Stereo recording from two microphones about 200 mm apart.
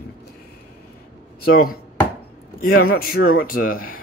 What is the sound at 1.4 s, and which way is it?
Speech, 50° left (ahead or behind).